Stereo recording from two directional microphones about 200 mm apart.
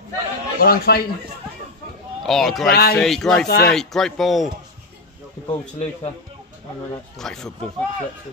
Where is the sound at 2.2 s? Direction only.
Centre (ahead or behind).